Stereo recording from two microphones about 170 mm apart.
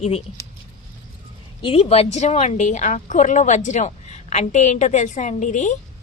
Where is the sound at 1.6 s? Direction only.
35° left (ahead or behind).